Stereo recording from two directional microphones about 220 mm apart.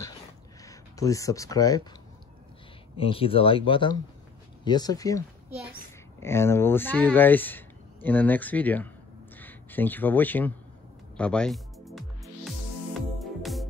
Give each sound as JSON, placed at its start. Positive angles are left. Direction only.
{"t": 0.7, "sound": "speech", "side_deg": 15}
{"t": 3.0, "sound": "speech", "side_deg": 25}
{"t": 11.1, "sound": "music", "side_deg": 5}
{"t": 13.2, "sound": "music", "side_deg": 0}